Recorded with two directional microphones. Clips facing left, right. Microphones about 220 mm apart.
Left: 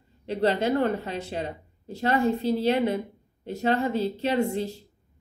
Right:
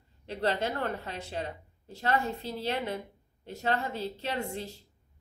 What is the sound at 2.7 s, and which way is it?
Speech, 15° left (ahead or behind).